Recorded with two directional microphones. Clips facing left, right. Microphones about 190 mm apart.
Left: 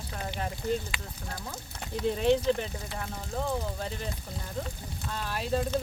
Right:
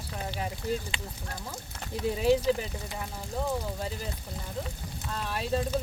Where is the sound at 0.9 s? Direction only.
25° right (ahead or behind).